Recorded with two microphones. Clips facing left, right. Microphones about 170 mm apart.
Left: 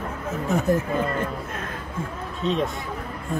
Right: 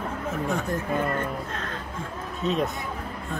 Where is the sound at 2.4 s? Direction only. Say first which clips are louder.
Left 2 dB; 5° right (ahead or behind).